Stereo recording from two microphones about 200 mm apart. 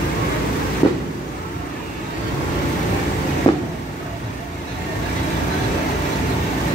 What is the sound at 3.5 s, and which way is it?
Vehicle, 30° left (ahead or behind).